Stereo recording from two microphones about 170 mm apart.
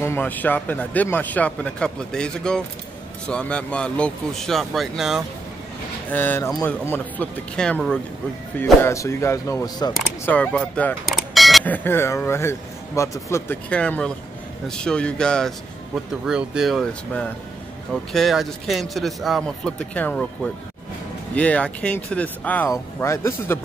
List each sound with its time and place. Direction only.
0.0 s speech: 10° left (ahead or behind)
6.0 s speech: 10° left (ahead or behind)
8.8 s speech: 15° left (ahead or behind)
10.2 s speech: 10° left (ahead or behind)